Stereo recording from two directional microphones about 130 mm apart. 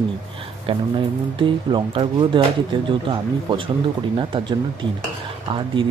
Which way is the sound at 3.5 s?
40° right (ahead or behind).